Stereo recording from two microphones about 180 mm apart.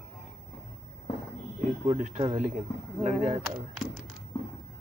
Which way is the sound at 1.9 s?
40° right (ahead or behind).